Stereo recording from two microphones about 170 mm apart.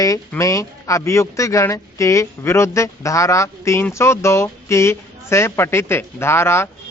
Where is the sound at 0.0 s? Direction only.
20° left (ahead or behind).